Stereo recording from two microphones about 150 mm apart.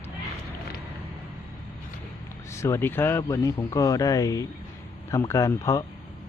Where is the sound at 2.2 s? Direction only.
20° left (ahead or behind).